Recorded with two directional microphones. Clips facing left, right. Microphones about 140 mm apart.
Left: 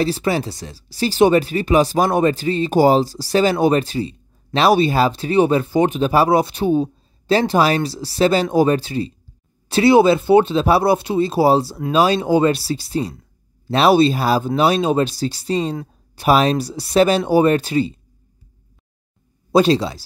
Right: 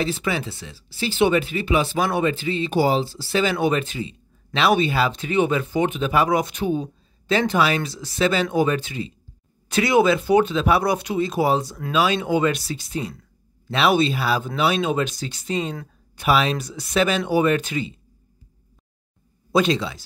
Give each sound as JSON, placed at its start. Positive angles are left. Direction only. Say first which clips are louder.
{"t": 0.0, "sound": "speech", "louder": "left 5 dB", "side_deg": 35}
{"t": 19.5, "sound": "speech", "louder": "left 5 dB", "side_deg": 35}